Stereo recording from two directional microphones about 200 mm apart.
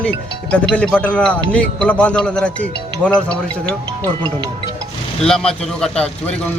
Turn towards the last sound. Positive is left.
turn(degrees=5)  # may be behind; listen again after turning